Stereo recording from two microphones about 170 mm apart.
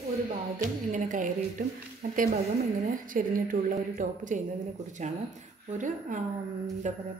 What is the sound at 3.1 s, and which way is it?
A woman's voice, 55° right (ahead or behind).